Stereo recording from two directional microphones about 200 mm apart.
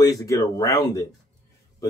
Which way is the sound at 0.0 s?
15° left (ahead or behind).